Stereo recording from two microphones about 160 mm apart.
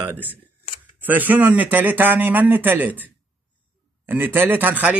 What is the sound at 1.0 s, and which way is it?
A man's voice, 10° right (ahead or behind).